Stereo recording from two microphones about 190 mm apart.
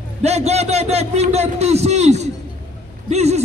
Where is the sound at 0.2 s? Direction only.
35° right (ahead or behind).